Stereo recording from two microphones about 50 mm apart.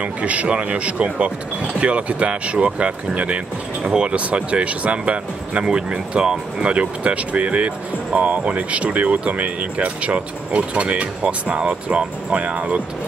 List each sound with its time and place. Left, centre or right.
0.0 s speech: right